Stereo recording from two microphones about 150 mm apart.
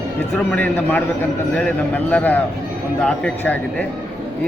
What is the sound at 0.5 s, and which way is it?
A man's voice, 10° left (ahead or behind).